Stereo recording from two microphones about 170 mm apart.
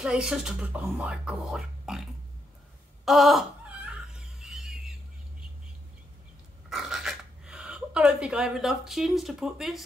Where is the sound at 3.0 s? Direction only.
Centre (ahead or behind).